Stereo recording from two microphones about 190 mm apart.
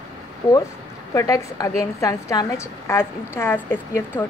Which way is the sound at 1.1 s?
15° left (ahead or behind).